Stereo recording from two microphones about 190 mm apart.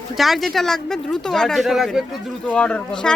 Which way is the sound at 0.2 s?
Centre (ahead or behind).